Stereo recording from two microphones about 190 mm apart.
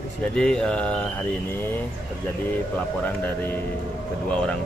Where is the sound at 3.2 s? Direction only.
10° left (ahead or behind).